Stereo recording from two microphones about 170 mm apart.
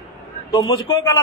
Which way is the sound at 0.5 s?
20° left (ahead or behind).